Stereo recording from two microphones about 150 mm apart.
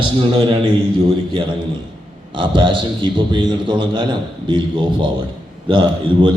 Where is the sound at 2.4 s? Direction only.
35° right (ahead or behind).